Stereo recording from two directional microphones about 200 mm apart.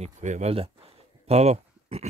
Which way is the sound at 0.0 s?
35° right (ahead or behind).